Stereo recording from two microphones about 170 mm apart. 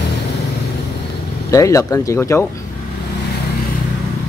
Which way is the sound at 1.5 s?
20° left (ahead or behind).